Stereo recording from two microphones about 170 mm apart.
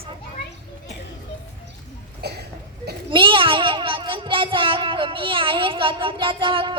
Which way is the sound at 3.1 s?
30° right (ahead or behind).